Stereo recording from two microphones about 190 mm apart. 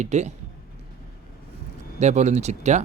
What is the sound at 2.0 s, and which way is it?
Speech, 35° right (ahead or behind).